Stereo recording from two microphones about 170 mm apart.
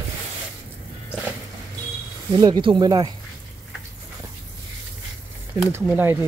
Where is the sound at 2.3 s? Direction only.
25° right (ahead or behind).